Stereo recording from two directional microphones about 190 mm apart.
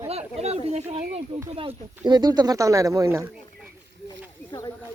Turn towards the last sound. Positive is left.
turn(degrees=-5)  # may be behind; listen again after turning